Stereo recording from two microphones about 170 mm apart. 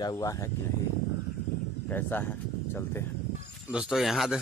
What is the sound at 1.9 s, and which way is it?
Speech, 10° left (ahead or behind).